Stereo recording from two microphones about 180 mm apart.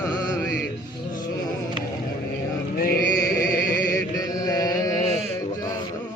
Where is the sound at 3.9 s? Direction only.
20° left (ahead or behind).